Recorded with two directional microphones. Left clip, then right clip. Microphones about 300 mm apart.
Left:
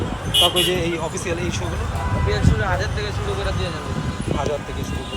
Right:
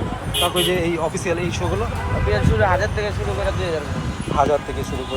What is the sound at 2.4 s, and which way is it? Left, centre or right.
Speech, centre.